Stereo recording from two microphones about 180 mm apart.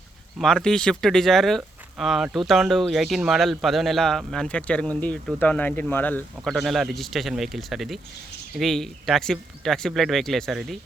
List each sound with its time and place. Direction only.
0.3 s speech: 5° left (ahead or behind)
6.3 s speech: centre (ahead or behind)